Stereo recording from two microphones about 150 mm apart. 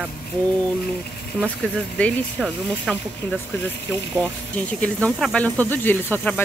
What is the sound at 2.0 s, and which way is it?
Speech, 10° left (ahead or behind).